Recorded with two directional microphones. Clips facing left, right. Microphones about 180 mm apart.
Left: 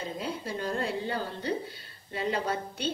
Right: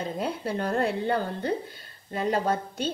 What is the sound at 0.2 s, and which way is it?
A woman's voice, 60° right (ahead or behind).